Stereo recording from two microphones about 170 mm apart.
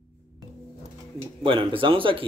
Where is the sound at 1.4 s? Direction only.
30° right (ahead or behind).